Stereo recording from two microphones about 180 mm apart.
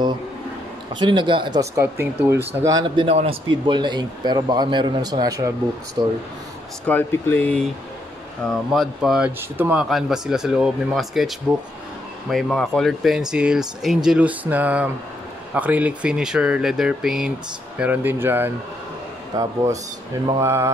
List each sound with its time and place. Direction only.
0.9 s speech: 25° right (ahead or behind)
6.9 s speech: 10° left (ahead or behind); by 20.7 s 15° right (ahead or behind)